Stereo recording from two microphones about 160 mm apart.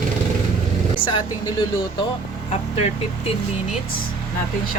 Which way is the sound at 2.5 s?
40° left (ahead or behind).